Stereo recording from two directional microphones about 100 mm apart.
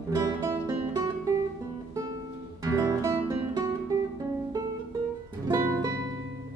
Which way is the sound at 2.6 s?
30° right (ahead or behind).